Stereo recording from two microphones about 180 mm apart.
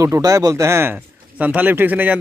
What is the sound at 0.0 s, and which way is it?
Speech, 15° right (ahead or behind).